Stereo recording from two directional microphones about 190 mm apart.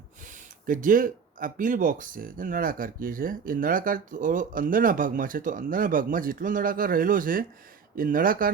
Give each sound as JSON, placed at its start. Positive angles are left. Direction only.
{"t": 0.3, "sound": "speech", "side_deg": -45}